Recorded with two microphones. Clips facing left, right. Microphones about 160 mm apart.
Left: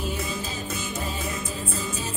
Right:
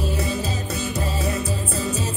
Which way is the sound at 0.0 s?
35° right (ahead or behind).